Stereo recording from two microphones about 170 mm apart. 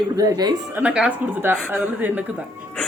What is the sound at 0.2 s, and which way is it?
Speech, 20° right (ahead or behind).